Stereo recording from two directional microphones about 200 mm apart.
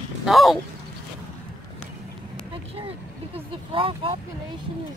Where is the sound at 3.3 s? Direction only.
25° right (ahead or behind).